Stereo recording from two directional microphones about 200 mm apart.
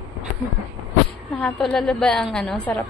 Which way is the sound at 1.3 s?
5° left (ahead or behind).